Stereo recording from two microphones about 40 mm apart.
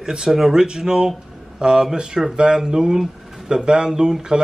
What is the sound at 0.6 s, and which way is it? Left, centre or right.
Speech, centre.